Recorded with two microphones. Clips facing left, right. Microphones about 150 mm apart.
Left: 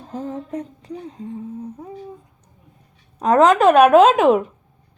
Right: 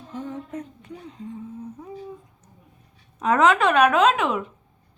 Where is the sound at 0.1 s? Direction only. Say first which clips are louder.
Left 5 dB; 35° left (ahead or behind).